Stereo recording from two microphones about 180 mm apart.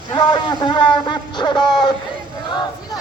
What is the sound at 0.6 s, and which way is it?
A man's voice, 25° left (ahead or behind).